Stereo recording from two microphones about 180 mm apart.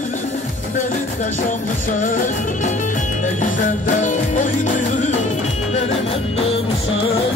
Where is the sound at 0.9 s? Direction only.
45° left (ahead or behind).